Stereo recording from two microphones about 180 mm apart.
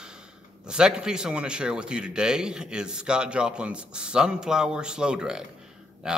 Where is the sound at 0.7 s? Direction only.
5° right (ahead or behind).